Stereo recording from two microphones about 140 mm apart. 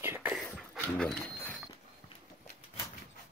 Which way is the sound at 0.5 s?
10° left (ahead or behind).